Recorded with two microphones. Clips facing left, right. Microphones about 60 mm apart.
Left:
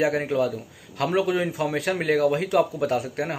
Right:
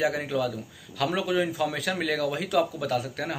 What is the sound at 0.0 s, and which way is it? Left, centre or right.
A man's voice, left.